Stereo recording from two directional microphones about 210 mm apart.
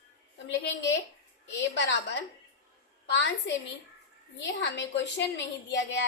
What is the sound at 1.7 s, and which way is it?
A woman's voice, 55° left (ahead or behind).